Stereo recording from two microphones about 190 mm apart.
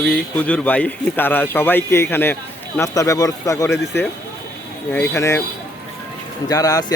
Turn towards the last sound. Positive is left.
turn(degrees=20)  # may be behind; listen again after turning